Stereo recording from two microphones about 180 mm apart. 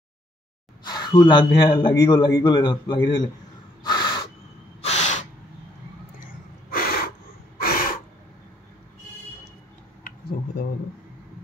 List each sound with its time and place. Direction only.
0.8 s a man's voice: 25° left (ahead or behind)
3.8 s crow: 25° left (ahead or behind)
4.8 s gasp: 40° left (ahead or behind)
6.7 s gasp: 55° left (ahead or behind)